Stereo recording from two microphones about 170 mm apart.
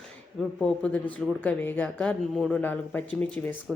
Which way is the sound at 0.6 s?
5° left (ahead or behind).